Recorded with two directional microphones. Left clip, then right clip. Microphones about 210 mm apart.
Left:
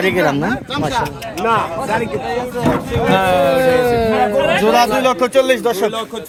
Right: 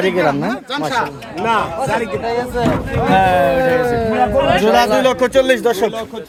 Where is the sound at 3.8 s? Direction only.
25° left (ahead or behind).